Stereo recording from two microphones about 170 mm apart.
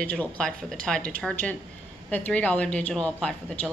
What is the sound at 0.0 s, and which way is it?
A woman's voice, 10° left (ahead or behind).